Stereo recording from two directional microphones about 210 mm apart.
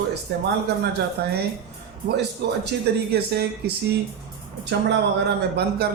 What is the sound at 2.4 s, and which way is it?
A man's voice, 55° right (ahead or behind).